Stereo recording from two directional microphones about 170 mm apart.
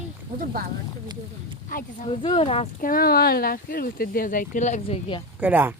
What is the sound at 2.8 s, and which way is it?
Speech, 60° left (ahead or behind).